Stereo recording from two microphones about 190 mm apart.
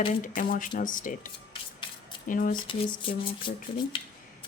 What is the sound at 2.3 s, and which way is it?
Speech, 45° left (ahead or behind).